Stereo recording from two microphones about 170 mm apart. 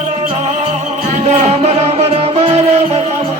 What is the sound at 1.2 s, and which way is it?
Music, 40° right (ahead or behind).